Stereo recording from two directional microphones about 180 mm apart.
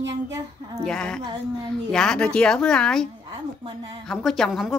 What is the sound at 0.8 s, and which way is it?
A woman's voice, 5° left (ahead or behind).